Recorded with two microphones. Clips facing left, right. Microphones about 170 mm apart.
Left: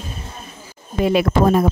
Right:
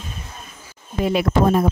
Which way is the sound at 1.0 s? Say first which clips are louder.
Left 2 dB; 80° left.